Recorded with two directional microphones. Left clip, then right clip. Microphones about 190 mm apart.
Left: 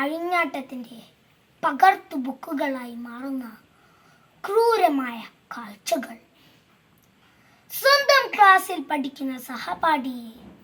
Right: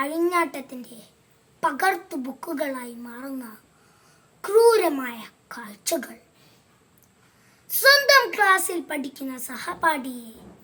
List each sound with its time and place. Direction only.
0.0 s a woman's voice: 20° right (ahead or behind)
7.7 s a woman's voice: 20° right (ahead or behind)